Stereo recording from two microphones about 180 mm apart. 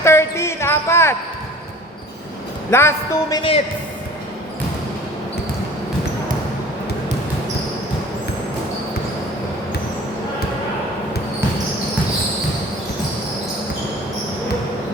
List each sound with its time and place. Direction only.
0.0 s speech: 15° left (ahead or behind)
2.6 s a man's voice: 15° left (ahead or behind)